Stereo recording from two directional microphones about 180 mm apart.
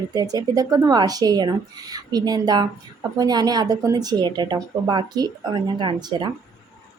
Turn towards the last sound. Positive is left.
turn(degrees=-25)  # may be behind; listen again after turning